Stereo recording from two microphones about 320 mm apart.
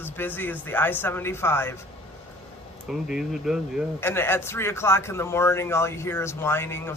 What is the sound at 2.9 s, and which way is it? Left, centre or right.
A man's voice, centre.